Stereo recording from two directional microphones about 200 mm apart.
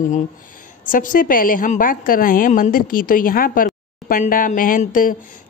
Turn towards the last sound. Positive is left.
turn(degrees=45)  # may be behind; listen again after turning